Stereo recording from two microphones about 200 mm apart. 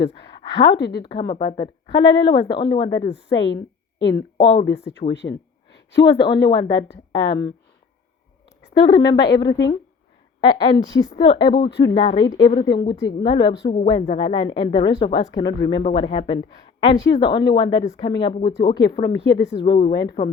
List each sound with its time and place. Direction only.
0.8 s speech: 60° left (ahead or behind)
1.1 s speech: 20° left (ahead or behind)
5.0 s speech: 35° left (ahead or behind)
6.1 s speech: 20° left (ahead or behind)
8.7 s speech: 20° left (ahead or behind)